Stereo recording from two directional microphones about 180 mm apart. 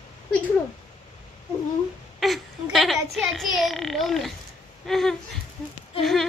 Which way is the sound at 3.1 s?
Centre (ahead or behind).